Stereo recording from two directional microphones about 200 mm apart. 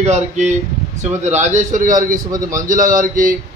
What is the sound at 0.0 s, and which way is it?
A man's voice, 35° right (ahead or behind).